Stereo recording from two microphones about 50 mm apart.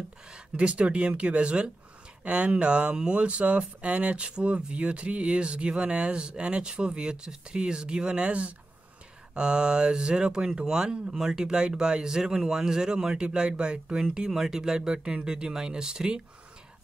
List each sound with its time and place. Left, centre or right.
0.3 s speech: right